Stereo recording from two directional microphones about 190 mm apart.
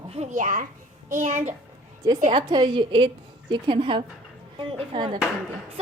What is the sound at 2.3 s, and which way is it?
A woman's voice, 25° right (ahead or behind).